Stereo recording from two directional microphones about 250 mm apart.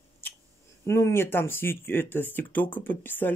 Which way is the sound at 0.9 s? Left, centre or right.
Centre.